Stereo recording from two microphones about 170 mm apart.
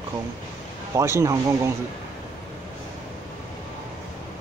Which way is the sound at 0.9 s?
15° right (ahead or behind).